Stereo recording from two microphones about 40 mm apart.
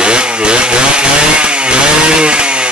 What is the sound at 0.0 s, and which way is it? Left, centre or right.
Chainsaw, right.